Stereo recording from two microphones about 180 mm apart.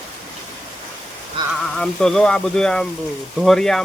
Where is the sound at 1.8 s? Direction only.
5° left (ahead or behind).